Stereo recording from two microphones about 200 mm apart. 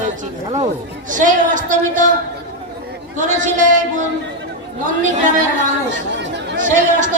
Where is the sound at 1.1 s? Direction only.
40° right (ahead or behind).